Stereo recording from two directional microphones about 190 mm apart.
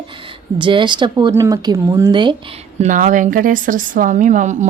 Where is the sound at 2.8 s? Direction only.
40° right (ahead or behind).